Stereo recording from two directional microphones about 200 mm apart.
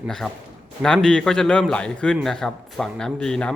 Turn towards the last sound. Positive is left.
turn(degrees=5)  # may be behind; listen again after turning